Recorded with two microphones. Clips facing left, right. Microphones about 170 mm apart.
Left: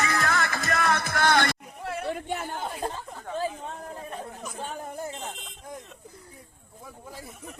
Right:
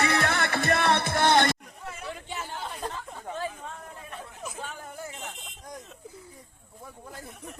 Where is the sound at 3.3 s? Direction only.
30° left (ahead or behind).